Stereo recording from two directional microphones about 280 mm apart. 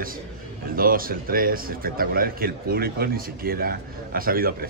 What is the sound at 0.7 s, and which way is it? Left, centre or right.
A man's voice, right.